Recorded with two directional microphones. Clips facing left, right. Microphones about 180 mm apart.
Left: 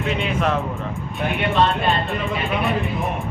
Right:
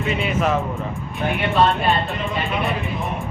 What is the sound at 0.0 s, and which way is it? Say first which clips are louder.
Speech: right 1 dB; centre (ahead or behind).